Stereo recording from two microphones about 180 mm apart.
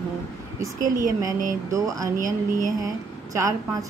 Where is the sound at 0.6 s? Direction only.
15° right (ahead or behind).